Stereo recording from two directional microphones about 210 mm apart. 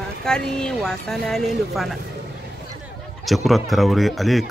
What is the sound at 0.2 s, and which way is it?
Speech, 5° left (ahead or behind).